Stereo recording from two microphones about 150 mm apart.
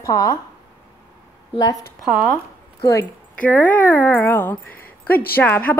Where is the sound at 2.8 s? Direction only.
20° left (ahead or behind).